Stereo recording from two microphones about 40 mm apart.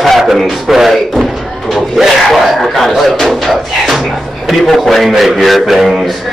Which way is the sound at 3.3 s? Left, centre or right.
Centre.